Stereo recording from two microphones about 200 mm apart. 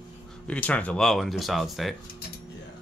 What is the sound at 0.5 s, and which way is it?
Speech, 5° left (ahead or behind).